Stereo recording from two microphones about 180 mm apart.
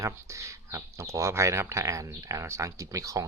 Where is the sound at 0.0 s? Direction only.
15° right (ahead or behind).